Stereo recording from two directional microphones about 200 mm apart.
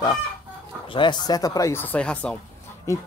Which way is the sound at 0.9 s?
20° left (ahead or behind).